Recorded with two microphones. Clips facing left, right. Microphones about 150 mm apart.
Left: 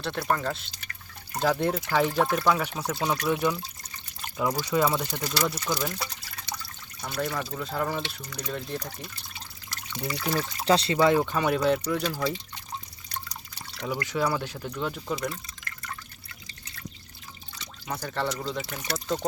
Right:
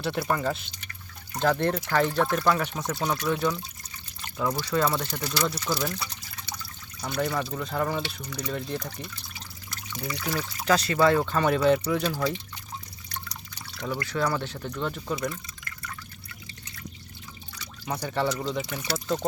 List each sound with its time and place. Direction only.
0.0 s speech: 10° right (ahead or behind)
1.4 s speech: 5° left (ahead or behind)
7.0 s speech: centre (ahead or behind)
9.9 s speech: 30° left (ahead or behind)
10.9 s speech: 15° left (ahead or behind); by 12.3 s 5° right (ahead or behind)
13.8 s speech: 15° left (ahead or behind)
17.8 s speech: 5° right (ahead or behind)